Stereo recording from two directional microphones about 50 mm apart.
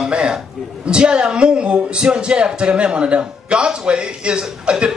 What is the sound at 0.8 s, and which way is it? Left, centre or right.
Speech, centre.